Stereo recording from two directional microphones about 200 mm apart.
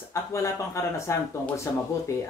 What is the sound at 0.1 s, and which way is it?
Speech, 15° left (ahead or behind).